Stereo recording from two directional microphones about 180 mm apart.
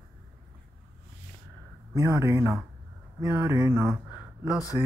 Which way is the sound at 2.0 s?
15° right (ahead or behind).